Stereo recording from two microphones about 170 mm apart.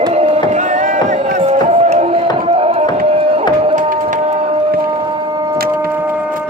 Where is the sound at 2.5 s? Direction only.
35° right (ahead or behind).